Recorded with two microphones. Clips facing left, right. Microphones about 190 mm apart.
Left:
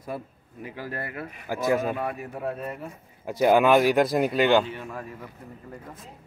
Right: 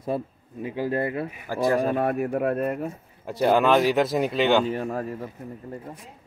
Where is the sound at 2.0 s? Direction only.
50° right (ahead or behind).